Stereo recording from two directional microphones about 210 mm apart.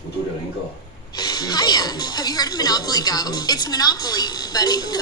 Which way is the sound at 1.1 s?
20° left (ahead or behind).